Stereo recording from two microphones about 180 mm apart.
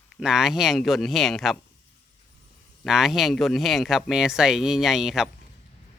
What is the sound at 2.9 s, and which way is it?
Speech, centre (ahead or behind).